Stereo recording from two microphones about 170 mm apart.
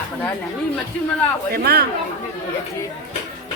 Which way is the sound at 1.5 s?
65° right (ahead or behind).